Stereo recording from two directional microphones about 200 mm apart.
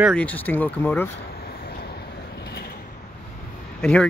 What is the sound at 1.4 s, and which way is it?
Vehicle, 50° left (ahead or behind).